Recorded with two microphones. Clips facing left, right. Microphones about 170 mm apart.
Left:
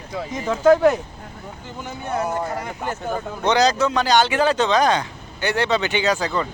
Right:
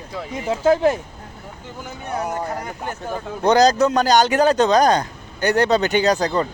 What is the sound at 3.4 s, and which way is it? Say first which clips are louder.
Speech: right 4 dB; 45° right (ahead or behind).